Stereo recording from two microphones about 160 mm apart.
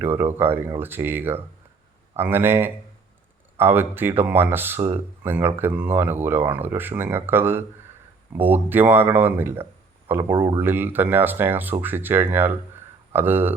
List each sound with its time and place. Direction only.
0.0 s speech: 15° right (ahead or behind)
10.2 s speech: 30° right (ahead or behind)
10.6 s speech: 15° right (ahead or behind)